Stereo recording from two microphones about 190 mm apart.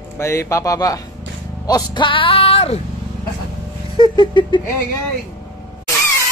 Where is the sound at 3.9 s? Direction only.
25° left (ahead or behind).